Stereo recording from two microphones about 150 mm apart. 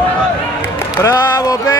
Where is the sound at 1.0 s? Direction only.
20° left (ahead or behind).